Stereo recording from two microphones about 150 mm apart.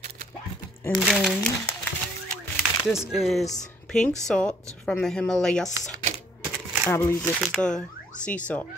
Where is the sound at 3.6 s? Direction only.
5° left (ahead or behind).